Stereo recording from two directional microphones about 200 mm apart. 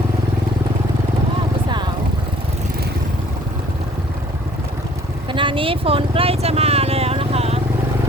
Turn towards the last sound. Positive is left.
turn(degrees=-30)  # may be behind; listen again after turning